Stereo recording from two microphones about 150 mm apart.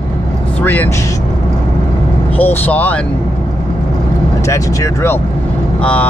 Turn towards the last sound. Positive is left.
turn(degrees=20)  # may be behind; listen again after turning